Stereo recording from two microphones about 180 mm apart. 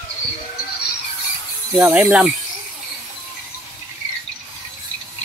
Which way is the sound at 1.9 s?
10° right (ahead or behind).